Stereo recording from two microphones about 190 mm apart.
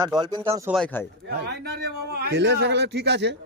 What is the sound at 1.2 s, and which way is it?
A man's voice, 60° right (ahead or behind).